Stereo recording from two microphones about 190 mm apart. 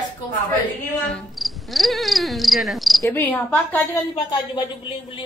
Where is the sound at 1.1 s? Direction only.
Centre (ahead or behind).